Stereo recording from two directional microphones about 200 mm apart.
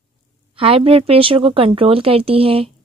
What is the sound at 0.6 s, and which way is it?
Speech, 30° right (ahead or behind).